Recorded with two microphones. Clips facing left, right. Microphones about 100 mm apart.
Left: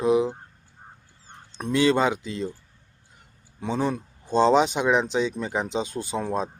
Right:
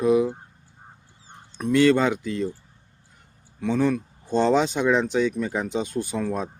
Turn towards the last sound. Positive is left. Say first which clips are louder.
# even
turn(degrees=25)  # may be behind; listen again after turning